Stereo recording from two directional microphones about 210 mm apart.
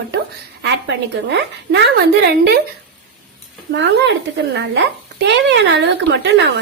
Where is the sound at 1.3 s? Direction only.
55° right (ahead or behind).